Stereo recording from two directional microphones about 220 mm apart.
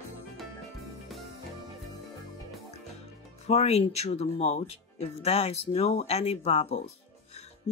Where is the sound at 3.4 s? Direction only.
30° left (ahead or behind).